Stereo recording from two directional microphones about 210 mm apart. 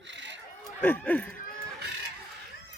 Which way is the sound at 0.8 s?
5° left (ahead or behind).